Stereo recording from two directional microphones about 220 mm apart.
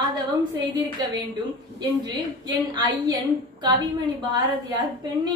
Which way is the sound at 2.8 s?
20° right (ahead or behind).